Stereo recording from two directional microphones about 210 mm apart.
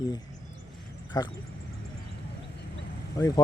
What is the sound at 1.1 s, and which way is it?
Speech, 20° left (ahead or behind).